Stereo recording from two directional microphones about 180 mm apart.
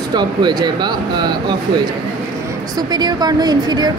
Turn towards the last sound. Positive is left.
turn(degrees=-25)  # may be behind; listen again after turning